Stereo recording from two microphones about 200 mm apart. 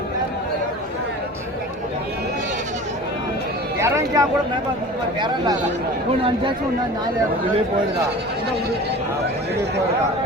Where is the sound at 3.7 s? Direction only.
15° right (ahead or behind).